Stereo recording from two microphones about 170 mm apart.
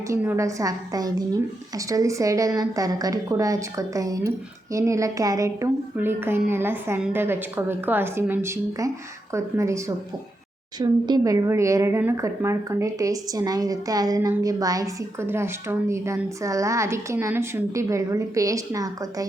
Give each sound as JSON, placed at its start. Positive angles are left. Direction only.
{"t": 0.1, "sound": "a woman's voice", "side_deg": -15}